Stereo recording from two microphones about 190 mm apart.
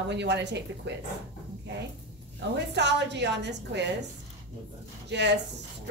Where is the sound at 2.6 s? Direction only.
65° right (ahead or behind).